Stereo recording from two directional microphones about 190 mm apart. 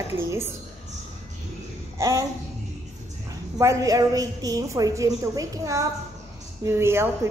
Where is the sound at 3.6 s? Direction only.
15° right (ahead or behind).